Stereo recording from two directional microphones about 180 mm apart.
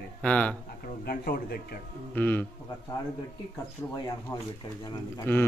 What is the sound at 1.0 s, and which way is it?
Speech, 55° left (ahead or behind).